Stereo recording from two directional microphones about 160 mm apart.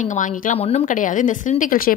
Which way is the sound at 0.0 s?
50° left (ahead or behind).